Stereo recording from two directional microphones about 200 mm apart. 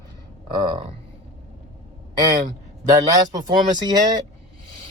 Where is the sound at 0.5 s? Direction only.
20° right (ahead or behind).